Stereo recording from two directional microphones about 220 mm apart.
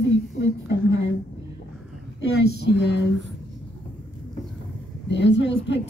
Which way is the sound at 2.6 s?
50° left (ahead or behind).